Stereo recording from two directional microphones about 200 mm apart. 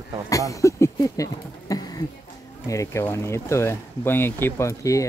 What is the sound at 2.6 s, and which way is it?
Speech, 15° left (ahead or behind).